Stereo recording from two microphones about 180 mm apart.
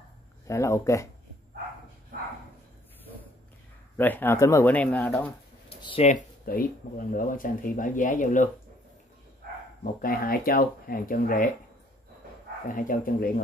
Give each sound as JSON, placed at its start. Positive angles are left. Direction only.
{"t": 0.5, "sound": "speech", "side_deg": 15}
{"t": 3.9, "sound": "speech", "side_deg": 10}
{"t": 5.7, "sound": "a sound", "side_deg": 30}
{"t": 6.0, "sound": "speech", "side_deg": 50}
{"t": 10.0, "sound": "speech", "side_deg": 55}
{"t": 12.6, "sound": "speech", "side_deg": 50}